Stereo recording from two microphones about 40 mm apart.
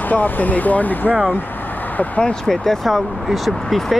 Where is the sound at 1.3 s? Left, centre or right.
Left.